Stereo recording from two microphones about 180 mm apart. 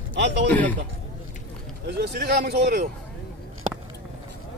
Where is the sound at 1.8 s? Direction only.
60° right (ahead or behind).